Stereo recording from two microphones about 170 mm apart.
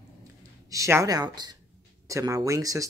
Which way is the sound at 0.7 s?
20° right (ahead or behind).